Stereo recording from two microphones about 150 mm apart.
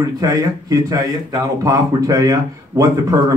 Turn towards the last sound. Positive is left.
turn(degrees=-20)  # may be behind; listen again after turning